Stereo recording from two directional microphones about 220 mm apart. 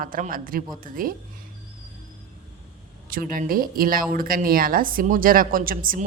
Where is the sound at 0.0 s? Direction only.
40° right (ahead or behind).